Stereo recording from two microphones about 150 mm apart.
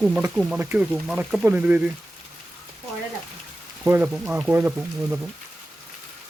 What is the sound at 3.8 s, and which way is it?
Speech, 15° right (ahead or behind).